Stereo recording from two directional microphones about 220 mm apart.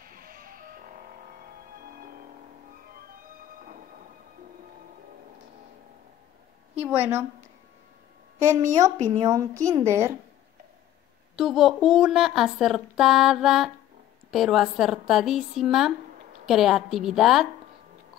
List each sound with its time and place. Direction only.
0.0 s music: 40° right (ahead or behind)
1.8 s music: 40° right (ahead or behind)
6.7 s a woman's voice: 5° right (ahead or behind)
8.9 s speech: 35° right (ahead or behind)
9.2 s a woman's voice: 15° right (ahead or behind)
11.3 s speech: centre (ahead or behind)